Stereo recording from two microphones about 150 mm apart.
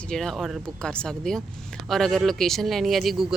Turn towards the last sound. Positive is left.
turn(degrees=0)  # may be behind; listen again after turning